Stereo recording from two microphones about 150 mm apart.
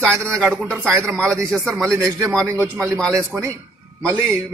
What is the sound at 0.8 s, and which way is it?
Speech, 20° right (ahead or behind).